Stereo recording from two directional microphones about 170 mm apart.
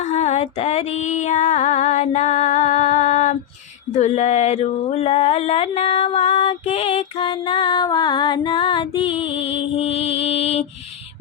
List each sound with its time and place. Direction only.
0.1 s music: 40° left (ahead or behind)
3.9 s a sound: 45° left (ahead or behind)
9.7 s mantra: 35° left (ahead or behind)